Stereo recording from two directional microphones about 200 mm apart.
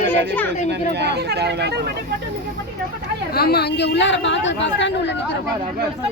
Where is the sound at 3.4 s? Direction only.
50° left (ahead or behind).